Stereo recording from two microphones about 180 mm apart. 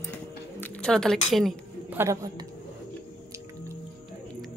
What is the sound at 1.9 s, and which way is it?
Speech, 20° right (ahead or behind).